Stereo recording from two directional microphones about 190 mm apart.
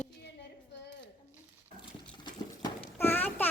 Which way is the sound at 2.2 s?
15° left (ahead or behind).